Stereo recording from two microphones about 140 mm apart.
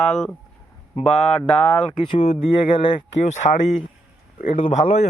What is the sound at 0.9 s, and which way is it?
Speech, 50° left (ahead or behind).